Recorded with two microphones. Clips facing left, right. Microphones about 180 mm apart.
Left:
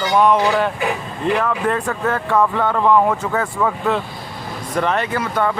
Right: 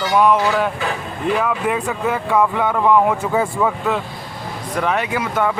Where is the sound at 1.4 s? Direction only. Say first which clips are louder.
Even; 5° right (ahead or behind).